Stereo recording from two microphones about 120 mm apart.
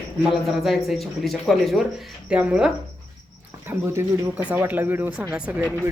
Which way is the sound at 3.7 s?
20° right (ahead or behind).